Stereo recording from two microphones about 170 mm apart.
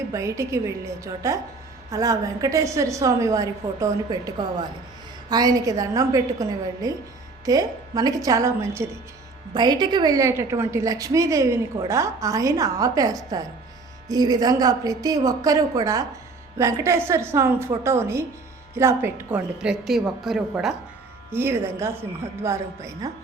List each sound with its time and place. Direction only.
0.1 s a woman's voice: 20° right (ahead or behind)
5.3 s a woman's voice: 20° right (ahead or behind); by 20.7 s centre (ahead or behind)
21.2 s a woman's voice: 15° right (ahead or behind)